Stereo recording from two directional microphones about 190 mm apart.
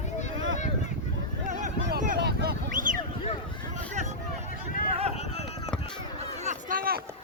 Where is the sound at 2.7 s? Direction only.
45° right (ahead or behind).